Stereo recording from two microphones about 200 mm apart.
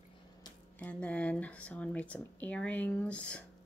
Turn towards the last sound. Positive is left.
turn(degrees=5)  # may be behind; listen again after turning